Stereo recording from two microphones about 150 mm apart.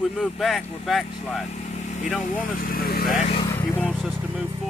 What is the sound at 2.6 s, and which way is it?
Speech, 80° left.